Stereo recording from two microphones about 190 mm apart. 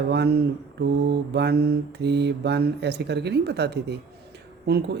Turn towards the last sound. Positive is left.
turn(degrees=-60)  # may be behind; listen again after turning